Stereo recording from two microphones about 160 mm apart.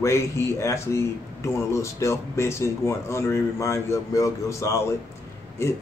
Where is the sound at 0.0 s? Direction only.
15° left (ahead or behind).